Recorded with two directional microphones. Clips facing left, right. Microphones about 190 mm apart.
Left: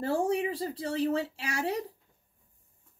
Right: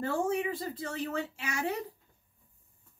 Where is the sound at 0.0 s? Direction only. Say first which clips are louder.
Left 2 dB; 35° left (ahead or behind).